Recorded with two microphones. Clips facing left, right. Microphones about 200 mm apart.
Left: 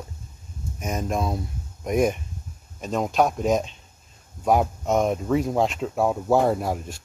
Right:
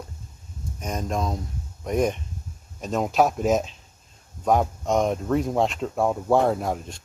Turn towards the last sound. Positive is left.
turn(degrees=5)  # may be behind; listen again after turning